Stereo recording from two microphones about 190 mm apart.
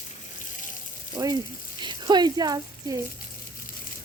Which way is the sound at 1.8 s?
20° right (ahead or behind).